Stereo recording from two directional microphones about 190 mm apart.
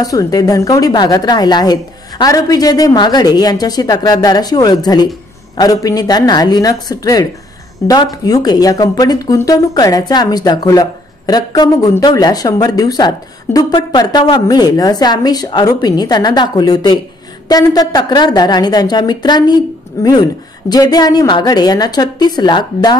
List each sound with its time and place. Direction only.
0.0 s speech: 20° left (ahead or behind)